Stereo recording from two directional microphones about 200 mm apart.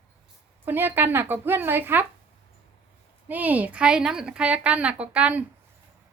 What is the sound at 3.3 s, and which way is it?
A woman's voice, 10° right (ahead or behind).